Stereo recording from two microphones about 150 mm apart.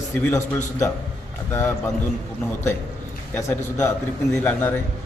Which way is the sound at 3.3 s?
15° left (ahead or behind).